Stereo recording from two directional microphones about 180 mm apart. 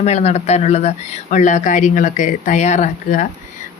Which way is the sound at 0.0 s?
35° left (ahead or behind).